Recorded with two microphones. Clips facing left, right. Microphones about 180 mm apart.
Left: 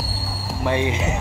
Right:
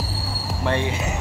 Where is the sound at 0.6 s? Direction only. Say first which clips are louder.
Left 2 dB; 15° left (ahead or behind).